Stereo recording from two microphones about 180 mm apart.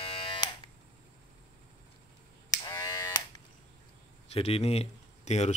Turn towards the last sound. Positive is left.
turn(degrees=35)  # may be behind; listen again after turning